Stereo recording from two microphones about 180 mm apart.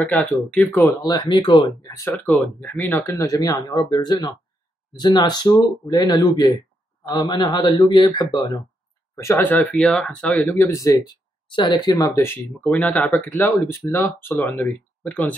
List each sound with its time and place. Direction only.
0.1 s speech: 5° left (ahead or behind)
0.7 s speech: 20° left (ahead or behind)
1.9 s speech: 10° left (ahead or behind)